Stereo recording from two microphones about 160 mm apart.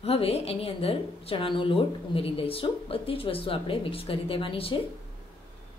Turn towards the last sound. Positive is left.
turn(degrees=35)  # may be behind; listen again after turning